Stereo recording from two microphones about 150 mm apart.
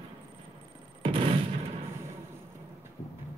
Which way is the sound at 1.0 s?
35° right (ahead or behind).